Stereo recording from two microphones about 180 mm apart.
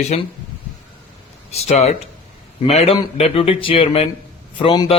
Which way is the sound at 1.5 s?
35° left (ahead or behind).